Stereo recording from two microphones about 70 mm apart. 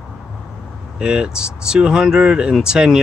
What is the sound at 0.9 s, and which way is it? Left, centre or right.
Speech, centre.